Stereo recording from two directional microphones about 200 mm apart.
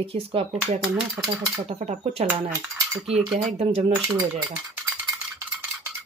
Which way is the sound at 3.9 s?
10° right (ahead or behind).